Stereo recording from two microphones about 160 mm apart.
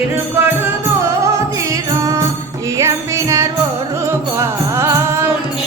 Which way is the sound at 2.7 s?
20° right (ahead or behind).